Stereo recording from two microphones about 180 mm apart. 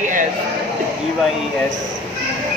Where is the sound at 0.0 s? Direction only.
45° right (ahead or behind).